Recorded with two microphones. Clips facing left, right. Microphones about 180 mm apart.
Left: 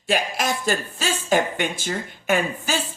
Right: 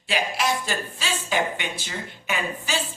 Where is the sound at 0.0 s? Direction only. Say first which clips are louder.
Left 2 dB; 45° left (ahead or behind).